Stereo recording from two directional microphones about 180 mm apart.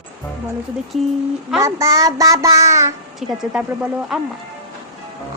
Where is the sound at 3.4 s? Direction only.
5° right (ahead or behind).